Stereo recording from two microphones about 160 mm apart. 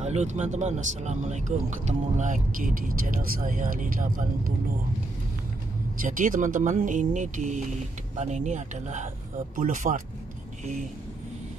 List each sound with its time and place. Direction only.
0.0 s speech: 45° right (ahead or behind)
6.0 s speech: 55° right (ahead or behind)